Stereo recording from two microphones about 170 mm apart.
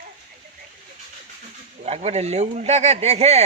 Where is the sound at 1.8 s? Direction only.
40° right (ahead or behind).